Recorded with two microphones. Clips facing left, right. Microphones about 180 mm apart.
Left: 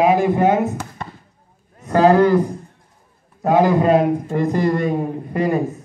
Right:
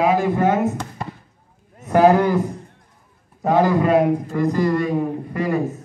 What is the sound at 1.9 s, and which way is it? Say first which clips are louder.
Speech: left 1 dB; 15° right (ahead or behind).